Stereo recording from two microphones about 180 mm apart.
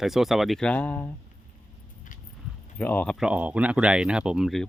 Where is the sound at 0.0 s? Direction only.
Centre (ahead or behind).